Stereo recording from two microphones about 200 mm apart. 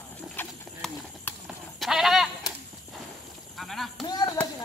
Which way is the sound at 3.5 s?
Centre (ahead or behind).